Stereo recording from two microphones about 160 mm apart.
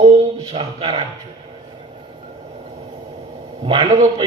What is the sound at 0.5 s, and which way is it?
Speech, 35° right (ahead or behind).